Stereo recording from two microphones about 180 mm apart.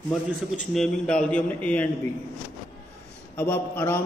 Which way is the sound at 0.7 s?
5° left (ahead or behind).